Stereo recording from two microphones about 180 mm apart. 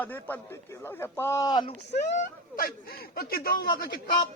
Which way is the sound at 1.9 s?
50° left (ahead or behind).